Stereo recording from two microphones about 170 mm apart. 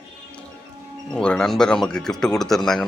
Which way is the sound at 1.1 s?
5° left (ahead or behind).